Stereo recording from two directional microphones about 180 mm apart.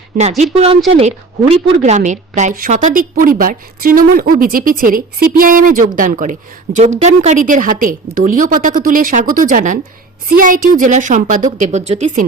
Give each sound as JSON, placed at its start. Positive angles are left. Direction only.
{"t": 0.2, "sound": "a woman's voice", "side_deg": -40}